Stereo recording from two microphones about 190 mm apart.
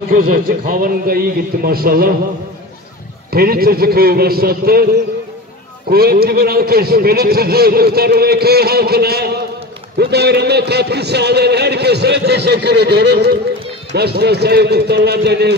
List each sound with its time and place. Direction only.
0.1 s a man's voice: 45° right (ahead or behind)
3.3 s a man's voice: 50° right (ahead or behind)
5.9 s a man's voice: 55° right (ahead or behind)